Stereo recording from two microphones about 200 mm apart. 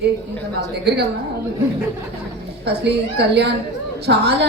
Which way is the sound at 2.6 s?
55° right (ahead or behind).